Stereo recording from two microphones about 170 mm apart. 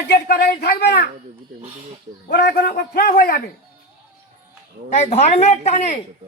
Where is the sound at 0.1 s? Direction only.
70° left (ahead or behind).